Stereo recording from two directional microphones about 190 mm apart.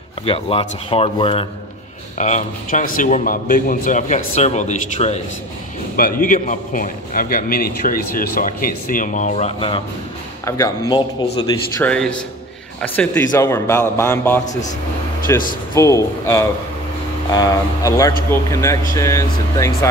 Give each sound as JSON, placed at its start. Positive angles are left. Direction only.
{"t": 0.2, "sound": "speech", "side_deg": 30}
{"t": 2.1, "sound": "a man's voice", "side_deg": 40}
{"t": 5.9, "sound": "a man's voice", "side_deg": 50}
{"t": 10.4, "sound": "a man's voice", "side_deg": 15}
{"t": 14.4, "sound": "a man's voice", "side_deg": 40}
{"t": 15.3, "sound": "speech", "side_deg": 15}